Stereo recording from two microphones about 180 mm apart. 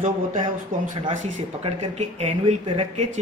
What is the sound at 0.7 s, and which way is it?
Speech, 50° right (ahead or behind).